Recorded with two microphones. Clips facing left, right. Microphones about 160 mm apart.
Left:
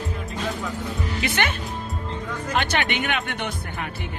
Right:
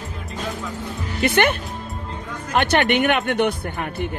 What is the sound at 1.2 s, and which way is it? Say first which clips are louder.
Speech: right 8 dB; 55° right (ahead or behind).